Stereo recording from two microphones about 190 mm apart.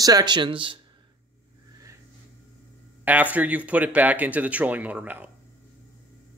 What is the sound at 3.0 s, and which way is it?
Speech, 10° right (ahead or behind).